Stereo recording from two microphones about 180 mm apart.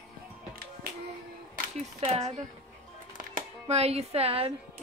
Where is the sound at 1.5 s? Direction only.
50° right (ahead or behind).